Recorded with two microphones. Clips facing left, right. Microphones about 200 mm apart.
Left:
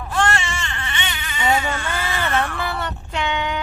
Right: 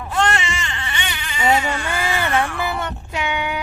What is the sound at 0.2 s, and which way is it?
Baby cry, 20° right (ahead or behind).